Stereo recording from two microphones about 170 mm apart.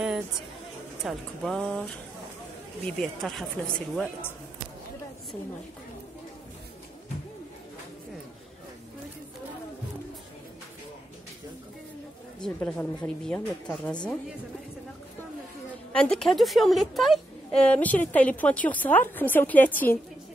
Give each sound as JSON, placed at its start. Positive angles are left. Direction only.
{"t": 1.0, "sound": "a woman's voice", "side_deg": 5}
{"t": 12.4, "sound": "a woman's voice", "side_deg": 5}
{"t": 15.9, "sound": "a woman's voice", "side_deg": 5}